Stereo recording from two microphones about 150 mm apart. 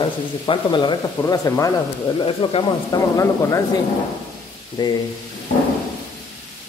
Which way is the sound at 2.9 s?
20° left (ahead or behind).